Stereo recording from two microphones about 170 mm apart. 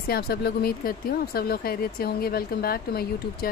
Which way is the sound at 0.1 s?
65° left (ahead or behind).